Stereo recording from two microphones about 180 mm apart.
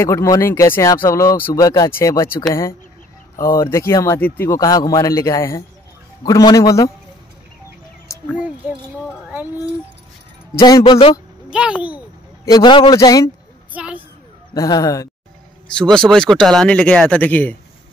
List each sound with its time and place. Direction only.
0.0 s speech: 15° left (ahead or behind)
3.3 s a man's voice: 20° left (ahead or behind)
10.5 s a man's voice: 20° left (ahead or behind)
10.8 s speech: 30° left (ahead or behind)
11.5 s speech: 5° right (ahead or behind)
12.4 s a man's voice: 25° left (ahead or behind)
13.7 s a sound: 10° right (ahead or behind)
14.5 s a man's voice: 20° left (ahead or behind)
15.7 s speech: 5° left (ahead or behind)